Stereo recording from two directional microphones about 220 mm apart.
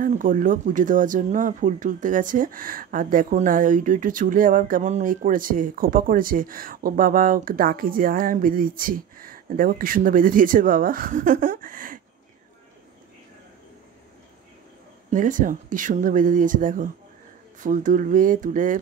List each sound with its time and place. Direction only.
0.0 s speech: 35° right (ahead or behind)
15.0 s speech: 35° right (ahead or behind)